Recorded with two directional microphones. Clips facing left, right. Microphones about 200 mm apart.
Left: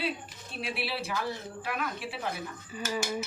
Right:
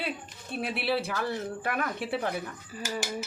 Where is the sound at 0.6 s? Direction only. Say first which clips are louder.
Right 5 dB; 55° right (ahead or behind).